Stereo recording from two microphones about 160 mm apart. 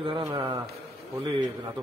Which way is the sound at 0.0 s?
30° right (ahead or behind).